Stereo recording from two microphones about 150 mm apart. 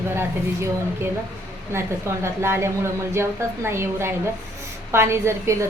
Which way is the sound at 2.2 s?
15° right (ahead or behind).